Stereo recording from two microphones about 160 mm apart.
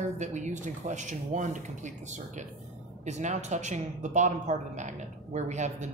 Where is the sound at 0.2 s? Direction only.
50° right (ahead or behind).